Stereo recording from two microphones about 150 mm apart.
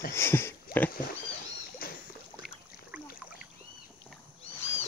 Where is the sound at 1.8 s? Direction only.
80° left.